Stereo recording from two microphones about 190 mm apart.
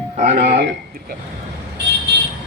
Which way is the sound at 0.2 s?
55° right (ahead or behind).